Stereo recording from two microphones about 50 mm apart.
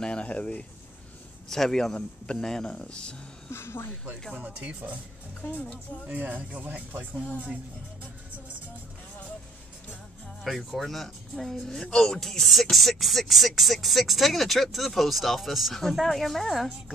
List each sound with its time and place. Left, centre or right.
0.0 s speech: centre
1.5 s speech: centre
3.5 s speech: left
4.4 s speech: right
5.4 s speech: left
6.1 s speech: right
10.5 s speech: centre